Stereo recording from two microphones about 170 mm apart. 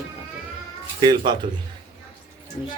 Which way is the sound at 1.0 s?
25° right (ahead or behind).